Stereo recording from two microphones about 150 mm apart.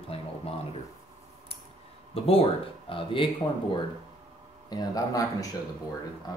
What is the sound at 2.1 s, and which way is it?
Speech, 40° left (ahead or behind).